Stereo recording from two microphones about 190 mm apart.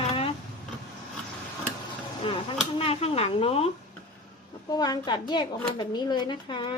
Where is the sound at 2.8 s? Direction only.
30° left (ahead or behind).